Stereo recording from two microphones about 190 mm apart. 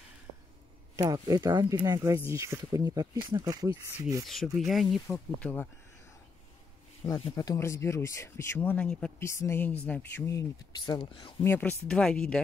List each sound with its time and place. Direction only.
0.9 s speech: 20° right (ahead or behind)
4.3 s speech: centre (ahead or behind)
4.8 s speech: 15° left (ahead or behind)
7.2 s speech: 15° left (ahead or behind)
11.4 s speech: 10° left (ahead or behind)